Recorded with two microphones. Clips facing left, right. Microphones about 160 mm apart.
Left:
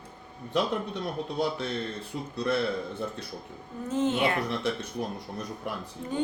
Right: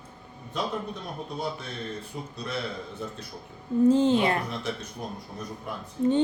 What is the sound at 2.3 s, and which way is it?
Speech, 60° left (ahead or behind).